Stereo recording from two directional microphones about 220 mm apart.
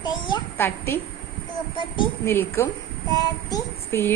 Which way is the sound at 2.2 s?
10° left (ahead or behind).